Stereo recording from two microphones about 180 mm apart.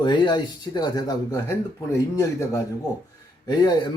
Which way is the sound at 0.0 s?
25° left (ahead or behind).